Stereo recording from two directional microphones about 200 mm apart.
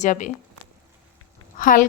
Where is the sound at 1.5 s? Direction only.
40° left (ahead or behind).